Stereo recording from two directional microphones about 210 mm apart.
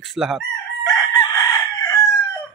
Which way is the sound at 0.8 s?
20° left (ahead or behind).